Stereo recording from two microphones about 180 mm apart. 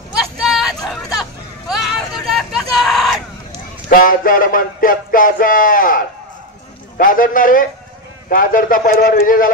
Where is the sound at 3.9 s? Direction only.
50° left (ahead or behind).